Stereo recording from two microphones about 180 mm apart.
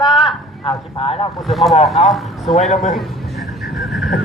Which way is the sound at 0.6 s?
30° left (ahead or behind).